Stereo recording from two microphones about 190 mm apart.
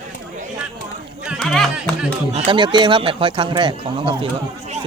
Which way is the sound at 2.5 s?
25° right (ahead or behind).